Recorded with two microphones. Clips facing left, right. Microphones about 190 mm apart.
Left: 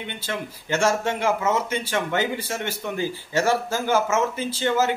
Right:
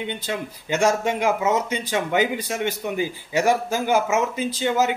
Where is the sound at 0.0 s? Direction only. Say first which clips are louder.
Right 3 dB; 15° right (ahead or behind).